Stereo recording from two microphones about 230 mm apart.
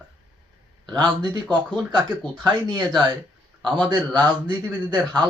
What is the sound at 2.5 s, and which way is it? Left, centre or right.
Speech, centre.